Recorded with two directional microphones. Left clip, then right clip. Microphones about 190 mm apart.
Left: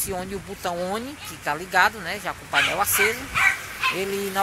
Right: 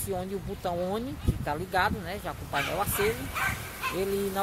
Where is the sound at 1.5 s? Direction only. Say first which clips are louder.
Left 7 dB; 10° left (ahead or behind).